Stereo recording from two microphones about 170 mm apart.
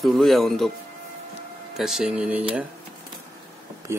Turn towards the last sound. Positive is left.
turn(degrees=-15)  # may be behind; listen again after turning